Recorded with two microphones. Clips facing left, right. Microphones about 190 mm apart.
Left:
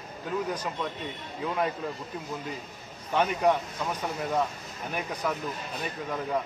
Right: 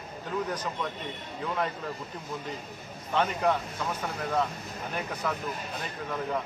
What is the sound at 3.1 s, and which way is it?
Speech, 10° left (ahead or behind).